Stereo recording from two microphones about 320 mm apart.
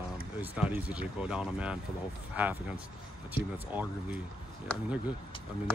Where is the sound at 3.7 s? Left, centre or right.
Centre.